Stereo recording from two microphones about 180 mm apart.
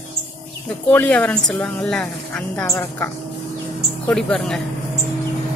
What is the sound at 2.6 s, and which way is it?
Speech, 15° left (ahead or behind).